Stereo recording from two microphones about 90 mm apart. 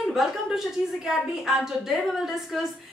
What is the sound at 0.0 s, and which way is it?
A woman's voice, 5° right (ahead or behind).